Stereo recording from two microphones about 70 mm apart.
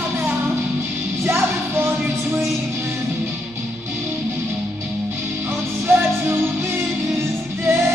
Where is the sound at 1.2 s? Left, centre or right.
Right.